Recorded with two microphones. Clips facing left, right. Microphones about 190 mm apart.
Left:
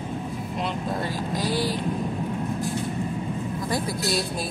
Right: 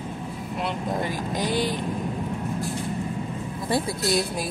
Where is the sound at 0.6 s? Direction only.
15° right (ahead or behind).